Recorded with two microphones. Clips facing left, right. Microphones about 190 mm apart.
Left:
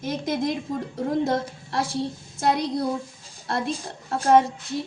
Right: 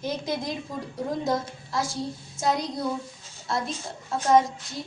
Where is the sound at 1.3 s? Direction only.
60° left (ahead or behind).